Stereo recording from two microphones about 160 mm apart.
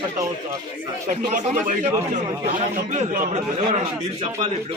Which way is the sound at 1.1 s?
55° right (ahead or behind).